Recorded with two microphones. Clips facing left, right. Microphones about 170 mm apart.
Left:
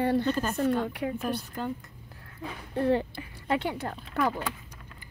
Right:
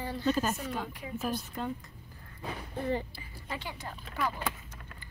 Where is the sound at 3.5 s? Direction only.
60° left (ahead or behind).